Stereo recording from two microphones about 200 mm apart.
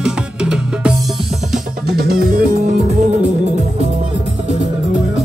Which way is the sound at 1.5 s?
50° right (ahead or behind).